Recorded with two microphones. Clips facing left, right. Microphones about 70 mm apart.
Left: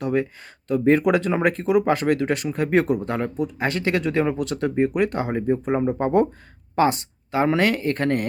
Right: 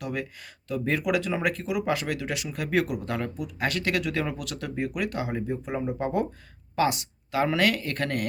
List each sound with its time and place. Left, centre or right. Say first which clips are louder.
0.0 s speech: left 9 dB; left
6.7 s speech: left 5 dB; left